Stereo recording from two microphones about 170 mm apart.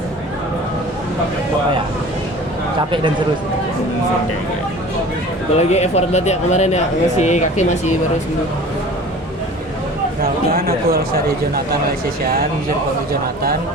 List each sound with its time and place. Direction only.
5.5 s speech: 40° left (ahead or behind)
10.5 s speech: 60° right (ahead or behind)